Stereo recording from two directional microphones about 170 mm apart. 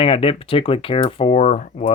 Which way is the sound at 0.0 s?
35° left (ahead or behind).